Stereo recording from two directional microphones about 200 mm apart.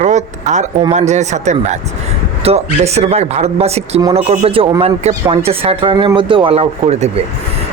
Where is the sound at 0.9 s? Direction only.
35° right (ahead or behind).